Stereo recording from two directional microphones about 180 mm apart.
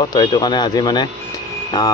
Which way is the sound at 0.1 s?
20° left (ahead or behind).